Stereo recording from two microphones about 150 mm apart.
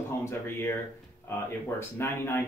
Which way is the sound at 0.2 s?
15° left (ahead or behind).